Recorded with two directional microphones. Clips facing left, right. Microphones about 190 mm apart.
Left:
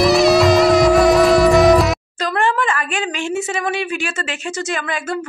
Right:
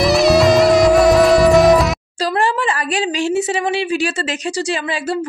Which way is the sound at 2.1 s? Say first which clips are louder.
Right 3 dB; 35° right (ahead or behind).